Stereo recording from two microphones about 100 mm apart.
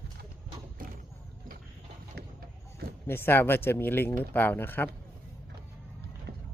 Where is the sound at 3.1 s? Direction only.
20° left (ahead or behind).